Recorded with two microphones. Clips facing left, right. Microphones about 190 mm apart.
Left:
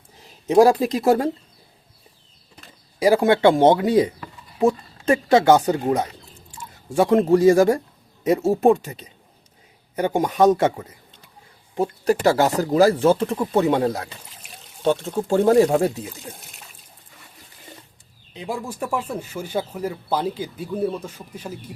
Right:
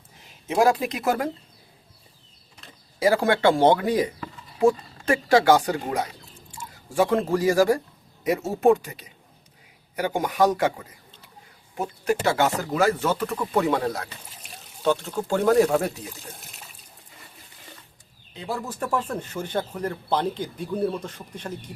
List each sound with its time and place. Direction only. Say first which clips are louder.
0.4 s speech: left 6 dB; 35° left (ahead or behind)
3.0 s speech: left 4 dB; 20° left (ahead or behind)
6.9 s speech: left 5 dB; 25° left (ahead or behind)
11.8 s speech: left 5 dB; 35° left (ahead or behind)
18.3 s speech: left 2 dB; 15° left (ahead or behind)